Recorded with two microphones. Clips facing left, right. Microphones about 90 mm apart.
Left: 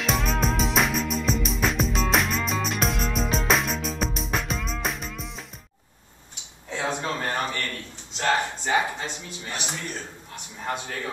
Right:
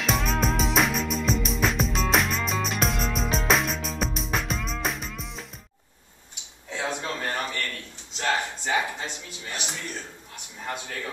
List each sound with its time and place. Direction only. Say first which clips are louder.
0.0 s music: even; centre (ahead or behind)
6.7 s a sound: left 2 dB; 35° left (ahead or behind)
10.3 s a man's voice: left 3 dB; 30° left (ahead or behind)